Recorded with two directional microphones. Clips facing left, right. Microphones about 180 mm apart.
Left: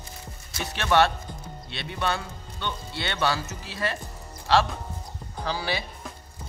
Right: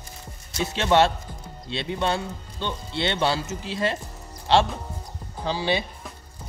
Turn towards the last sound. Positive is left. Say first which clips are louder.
# right 4 dB
turn(degrees=-20)  # may be behind; listen again after turning